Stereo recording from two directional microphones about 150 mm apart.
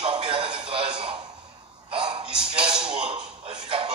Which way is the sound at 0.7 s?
35° right (ahead or behind).